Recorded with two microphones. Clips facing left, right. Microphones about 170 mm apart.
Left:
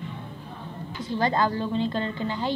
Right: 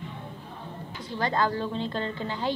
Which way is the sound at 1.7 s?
10° left (ahead or behind).